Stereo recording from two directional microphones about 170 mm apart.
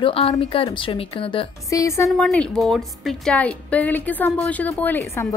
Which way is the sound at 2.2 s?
5° left (ahead or behind).